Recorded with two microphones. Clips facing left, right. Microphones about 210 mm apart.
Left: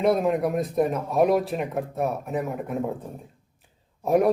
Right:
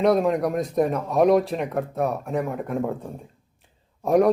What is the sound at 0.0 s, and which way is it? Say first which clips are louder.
Speech: right 2 dB; centre (ahead or behind).